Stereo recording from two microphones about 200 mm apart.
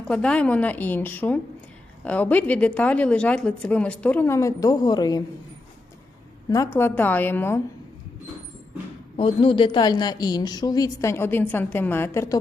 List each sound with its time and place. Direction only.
0.1 s speech: 5° left (ahead or behind)
6.7 s speech: 10° left (ahead or behind)
9.1 s a woman's voice: 25° left (ahead or behind)